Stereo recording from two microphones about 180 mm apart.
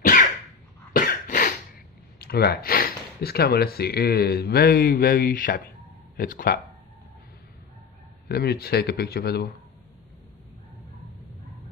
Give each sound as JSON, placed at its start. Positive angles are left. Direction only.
{"t": 0.9, "sound": "cough", "side_deg": 50}
{"t": 2.1, "sound": "speech", "side_deg": 60}
{"t": 8.3, "sound": "speech", "side_deg": 60}